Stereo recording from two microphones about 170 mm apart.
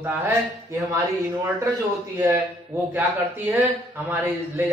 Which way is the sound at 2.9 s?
10° right (ahead or behind).